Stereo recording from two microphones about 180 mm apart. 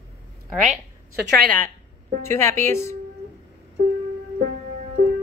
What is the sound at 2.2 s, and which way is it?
Speech, 15° left (ahead or behind).